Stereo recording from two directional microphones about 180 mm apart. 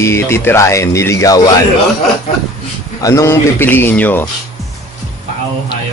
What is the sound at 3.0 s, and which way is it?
Speech, 20° left (ahead or behind).